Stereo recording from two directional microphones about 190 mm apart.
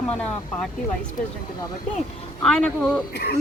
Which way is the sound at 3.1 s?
55° left (ahead or behind).